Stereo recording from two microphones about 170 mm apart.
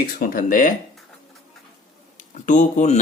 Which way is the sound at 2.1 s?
50° left (ahead or behind).